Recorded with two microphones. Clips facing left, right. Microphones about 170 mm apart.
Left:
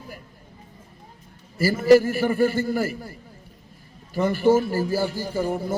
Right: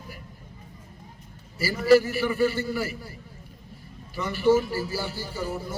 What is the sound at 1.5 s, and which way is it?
A man's voice, 45° left (ahead or behind).